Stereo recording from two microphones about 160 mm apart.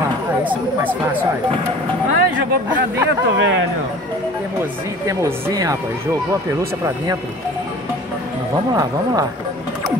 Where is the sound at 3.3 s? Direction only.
90° right.